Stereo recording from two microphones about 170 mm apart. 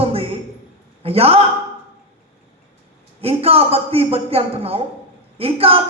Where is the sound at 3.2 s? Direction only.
35° right (ahead or behind).